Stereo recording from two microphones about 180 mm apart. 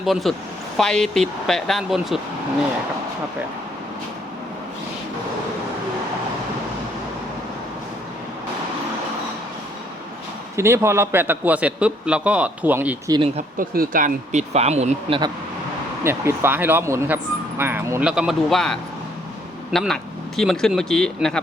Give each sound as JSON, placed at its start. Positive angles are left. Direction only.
{"t": 0.0, "sound": "speech", "side_deg": 0}
{"t": 10.6, "sound": "a man's voice", "side_deg": -15}
{"t": 13.6, "sound": "speech", "side_deg": -50}
{"t": 16.0, "sound": "a man's voice", "side_deg": -15}